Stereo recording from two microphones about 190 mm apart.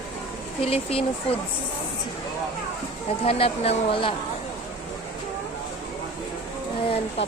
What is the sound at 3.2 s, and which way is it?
Speech, 30° left (ahead or behind).